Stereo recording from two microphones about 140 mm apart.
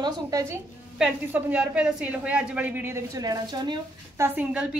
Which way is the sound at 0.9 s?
5° right (ahead or behind).